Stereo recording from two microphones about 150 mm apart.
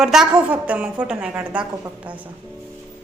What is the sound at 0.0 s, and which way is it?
A woman's voice, 5° right (ahead or behind).